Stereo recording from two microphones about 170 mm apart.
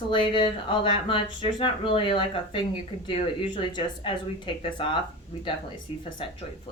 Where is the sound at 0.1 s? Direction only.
30° left (ahead or behind).